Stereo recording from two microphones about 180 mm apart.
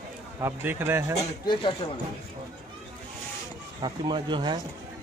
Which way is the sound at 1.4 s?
25° left (ahead or behind).